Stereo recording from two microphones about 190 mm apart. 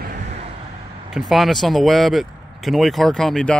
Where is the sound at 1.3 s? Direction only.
Centre (ahead or behind).